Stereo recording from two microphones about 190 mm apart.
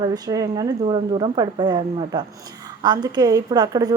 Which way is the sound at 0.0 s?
20° right (ahead or behind).